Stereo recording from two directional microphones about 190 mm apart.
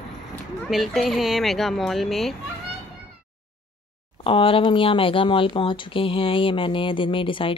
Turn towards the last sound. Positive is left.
turn(degrees=25)  # may be behind; listen again after turning